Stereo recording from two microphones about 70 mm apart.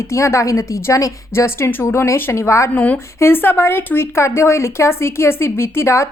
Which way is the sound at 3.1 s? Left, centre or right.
Left.